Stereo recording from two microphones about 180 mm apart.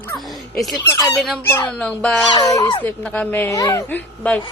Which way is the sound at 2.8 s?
5° left (ahead or behind).